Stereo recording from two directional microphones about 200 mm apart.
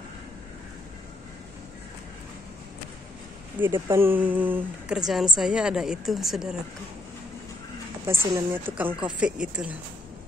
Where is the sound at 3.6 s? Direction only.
10° right (ahead or behind).